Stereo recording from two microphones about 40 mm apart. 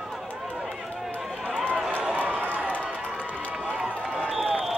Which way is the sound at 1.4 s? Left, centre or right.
Right.